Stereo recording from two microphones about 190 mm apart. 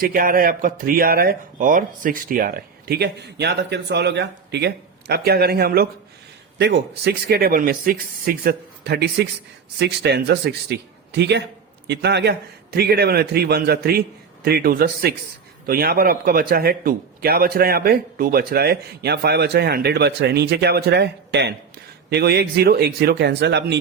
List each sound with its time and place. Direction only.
0.0 s a man's voice: 50° right (ahead or behind); by 23.7 s 65° right (ahead or behind)